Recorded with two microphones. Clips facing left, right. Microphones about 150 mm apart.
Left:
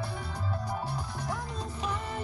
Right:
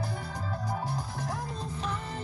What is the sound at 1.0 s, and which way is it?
Music, 45° right (ahead or behind).